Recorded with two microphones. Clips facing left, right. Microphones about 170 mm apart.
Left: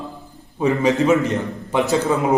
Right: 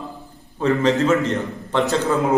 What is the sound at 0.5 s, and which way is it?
A man's voice, 15° left (ahead or behind).